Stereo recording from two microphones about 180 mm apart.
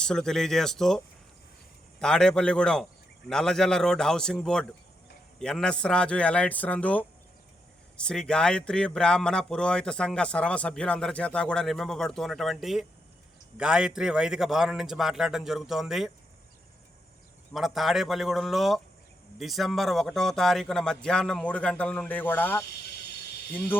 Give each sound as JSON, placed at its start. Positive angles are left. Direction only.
{"t": 0.0, "sound": "speech", "side_deg": 5}
{"t": 17.5, "sound": "speech", "side_deg": 0}